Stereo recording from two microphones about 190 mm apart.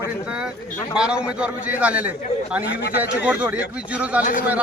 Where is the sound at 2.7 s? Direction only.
60° left (ahead or behind).